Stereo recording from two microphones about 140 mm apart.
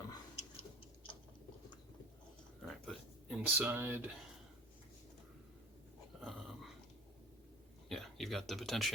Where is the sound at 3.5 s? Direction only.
15° right (ahead or behind).